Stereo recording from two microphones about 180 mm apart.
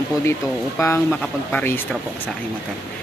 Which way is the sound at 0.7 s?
15° left (ahead or behind).